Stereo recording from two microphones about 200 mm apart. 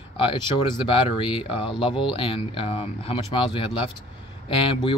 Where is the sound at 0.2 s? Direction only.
25° left (ahead or behind).